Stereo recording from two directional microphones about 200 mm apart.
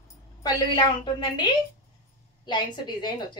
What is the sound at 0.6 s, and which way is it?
A woman's voice, 25° left (ahead or behind).